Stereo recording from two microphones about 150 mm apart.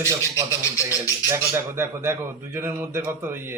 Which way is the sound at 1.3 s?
15° right (ahead or behind).